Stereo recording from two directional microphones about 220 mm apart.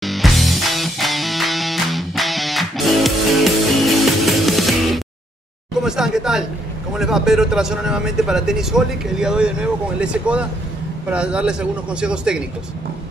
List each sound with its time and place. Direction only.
0.0 s music: centre (ahead or behind)
5.9 s a sound: centre (ahead or behind)
6.9 s speech: centre (ahead or behind)